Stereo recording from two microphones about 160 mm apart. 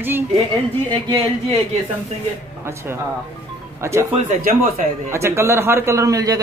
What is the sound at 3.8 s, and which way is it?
Speech, 15° right (ahead or behind).